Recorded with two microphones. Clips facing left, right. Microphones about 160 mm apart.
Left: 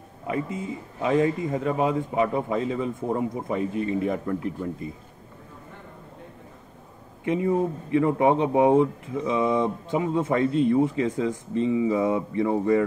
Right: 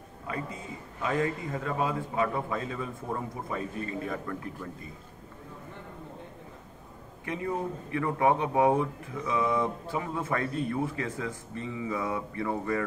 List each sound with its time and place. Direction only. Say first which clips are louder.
1.0 s speech: left 7 dB; 20° left (ahead or behind)
7.2 s speech: left 9 dB; 20° left (ahead or behind)